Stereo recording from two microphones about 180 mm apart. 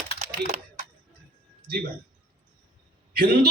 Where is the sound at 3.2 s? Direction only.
55° right (ahead or behind).